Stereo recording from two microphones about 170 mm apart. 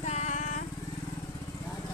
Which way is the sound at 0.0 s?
40° left (ahead or behind).